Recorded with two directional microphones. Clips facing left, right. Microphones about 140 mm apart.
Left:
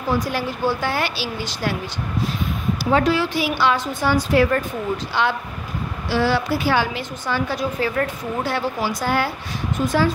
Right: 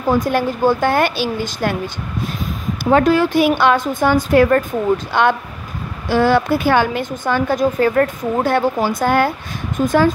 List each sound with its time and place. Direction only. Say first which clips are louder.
0.1 s a woman's voice: right 6 dB; 50° right (ahead or behind)
2.8 s a woman's voice: right 6 dB; 50° right (ahead or behind)